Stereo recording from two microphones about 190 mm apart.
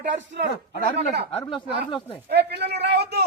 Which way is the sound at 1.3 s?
30° left (ahead or behind).